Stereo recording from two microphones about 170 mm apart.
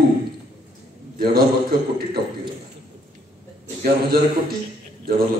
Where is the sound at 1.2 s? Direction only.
65° right (ahead or behind).